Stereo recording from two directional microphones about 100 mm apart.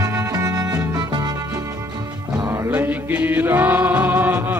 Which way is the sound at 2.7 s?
15° right (ahead or behind).